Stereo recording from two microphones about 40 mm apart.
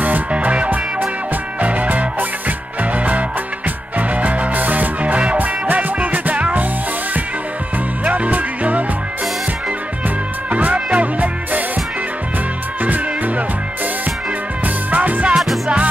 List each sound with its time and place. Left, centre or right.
0.0 s music: right
8.0 s music: right
10.0 s music: right
12.8 s music: right
14.9 s music: right
15.3 s music: centre